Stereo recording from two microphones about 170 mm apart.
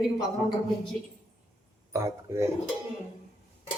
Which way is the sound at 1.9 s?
15° right (ahead or behind).